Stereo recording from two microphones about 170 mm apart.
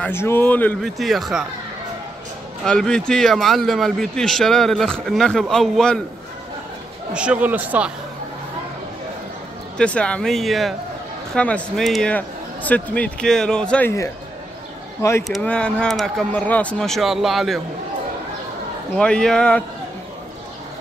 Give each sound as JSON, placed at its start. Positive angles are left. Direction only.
{"t": 0.0, "sound": "a man's voice", "side_deg": 15}
{"t": 2.6, "sound": "a man's voice", "side_deg": 5}
{"t": 7.2, "sound": "speech", "side_deg": -10}
{"t": 9.8, "sound": "a man's voice", "side_deg": 5}
{"t": 15.2, "sound": "a man's voice", "side_deg": 5}
{"t": 18.9, "sound": "a man's voice", "side_deg": 5}